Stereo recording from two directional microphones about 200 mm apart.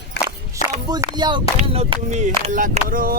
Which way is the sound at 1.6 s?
35° right (ahead or behind).